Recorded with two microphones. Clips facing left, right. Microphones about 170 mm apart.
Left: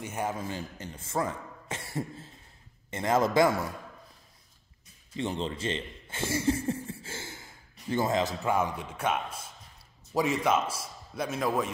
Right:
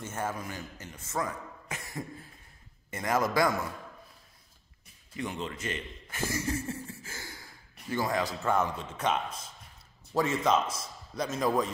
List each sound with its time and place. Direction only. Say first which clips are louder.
0.0 s a man's voice: left 2 dB; 15° left (ahead or behind)
0.4 s a man's voice: left 4 dB; 25° left (ahead or behind)
5.1 s chuckle: left 4 dB; 30° left (ahead or behind)
7.9 s a man's voice: left 3 dB; 25° left (ahead or behind); by 11.6 s 5° left (ahead or behind)